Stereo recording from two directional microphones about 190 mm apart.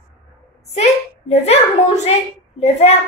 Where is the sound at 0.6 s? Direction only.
35° left (ahead or behind).